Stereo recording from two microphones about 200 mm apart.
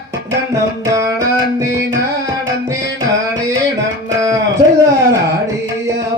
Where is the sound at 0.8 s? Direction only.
15° right (ahead or behind).